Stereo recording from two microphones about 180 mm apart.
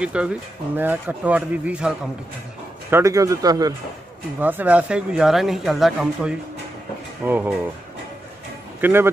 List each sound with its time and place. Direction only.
0.0 s speech: 5° right (ahead or behind)
2.9 s speech: 15° right (ahead or behind)
4.4 s speech: 10° right (ahead or behind)
8.8 s speech: 15° right (ahead or behind)